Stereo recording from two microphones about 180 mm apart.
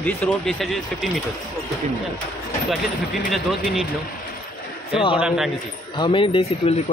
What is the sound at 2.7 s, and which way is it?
Speech, centre (ahead or behind).